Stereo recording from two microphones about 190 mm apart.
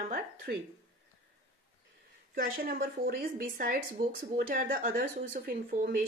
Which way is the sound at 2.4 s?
50° right (ahead or behind).